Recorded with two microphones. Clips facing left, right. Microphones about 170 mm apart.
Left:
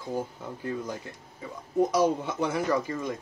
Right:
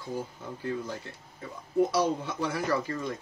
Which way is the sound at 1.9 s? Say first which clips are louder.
Left 3 dB; 15° left (ahead or behind).